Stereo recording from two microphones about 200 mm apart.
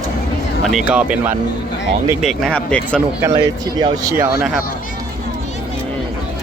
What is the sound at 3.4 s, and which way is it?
Speech, 20° right (ahead or behind).